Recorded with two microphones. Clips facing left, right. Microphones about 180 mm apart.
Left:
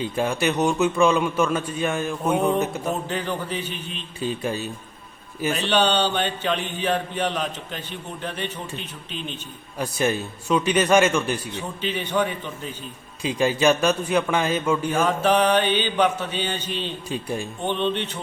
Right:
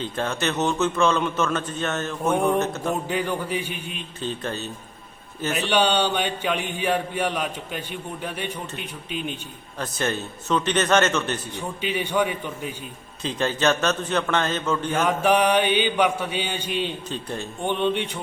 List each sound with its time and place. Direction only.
0.0 s a man's voice: 10° left (ahead or behind)
3.1 s mantra: 10° right (ahead or behind)
4.2 s a man's voice: 10° left (ahead or behind)
5.5 s mantra: 10° right (ahead or behind)
9.7 s a man's voice: 10° left (ahead or behind)
11.5 s mantra: 10° right (ahead or behind)
13.2 s a man's voice: 10° left (ahead or behind)
15.0 s mantra: 10° right (ahead or behind)
17.1 s a man's voice: 10° left (ahead or behind)
17.6 s mantra: 15° right (ahead or behind)